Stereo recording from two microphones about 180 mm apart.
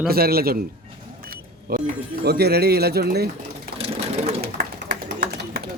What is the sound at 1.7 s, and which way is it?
A man's voice, 60° right (ahead or behind).